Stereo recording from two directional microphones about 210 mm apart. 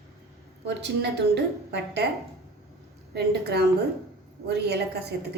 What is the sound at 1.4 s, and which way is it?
Speech, 55° right (ahead or behind).